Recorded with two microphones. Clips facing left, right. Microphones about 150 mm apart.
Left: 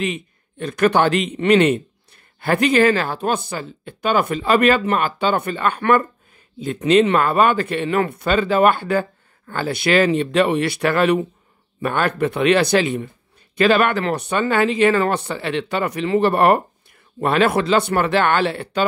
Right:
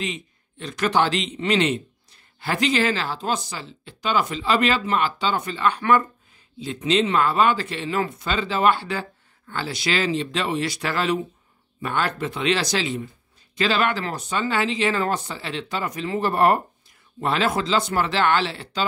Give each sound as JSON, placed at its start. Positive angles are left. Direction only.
{"t": 0.0, "sound": "a man's voice", "side_deg": 55}